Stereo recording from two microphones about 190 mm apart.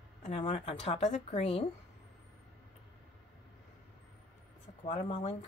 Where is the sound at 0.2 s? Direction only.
35° left (ahead or behind).